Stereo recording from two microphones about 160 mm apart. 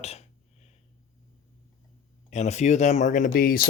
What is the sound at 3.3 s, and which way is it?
Speech, 65° left (ahead or behind).